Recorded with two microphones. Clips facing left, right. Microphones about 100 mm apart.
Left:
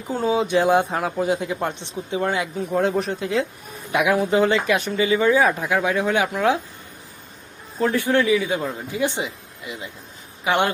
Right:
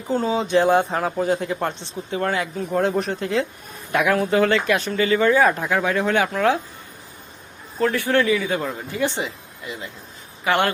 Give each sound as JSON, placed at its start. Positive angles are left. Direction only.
{"t": 0.1, "sound": "speech", "side_deg": 10}
{"t": 2.6, "sound": "speech", "side_deg": 0}
{"t": 3.9, "sound": "speech", "side_deg": 15}
{"t": 7.8, "sound": "speech", "side_deg": 15}